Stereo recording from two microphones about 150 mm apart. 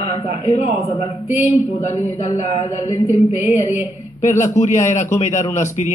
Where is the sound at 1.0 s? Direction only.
45° left (ahead or behind).